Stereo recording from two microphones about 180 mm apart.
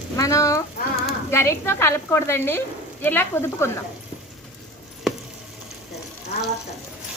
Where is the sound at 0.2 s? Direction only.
20° left (ahead or behind).